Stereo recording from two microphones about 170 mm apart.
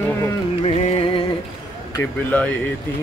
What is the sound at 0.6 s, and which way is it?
Music, 35° left (ahead or behind).